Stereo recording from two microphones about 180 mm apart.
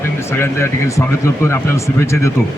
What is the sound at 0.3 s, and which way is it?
A man's voice, 15° left (ahead or behind).